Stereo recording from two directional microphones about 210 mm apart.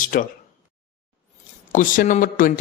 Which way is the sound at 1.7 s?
40° left (ahead or behind).